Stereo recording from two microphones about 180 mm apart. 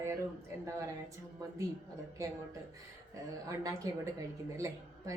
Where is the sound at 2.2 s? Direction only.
15° right (ahead or behind).